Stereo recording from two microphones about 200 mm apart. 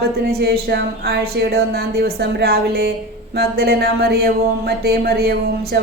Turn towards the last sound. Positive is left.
turn(degrees=-50)  # may be behind; listen again after turning